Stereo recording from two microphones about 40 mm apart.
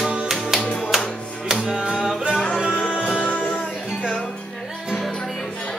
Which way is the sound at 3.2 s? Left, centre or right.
Left.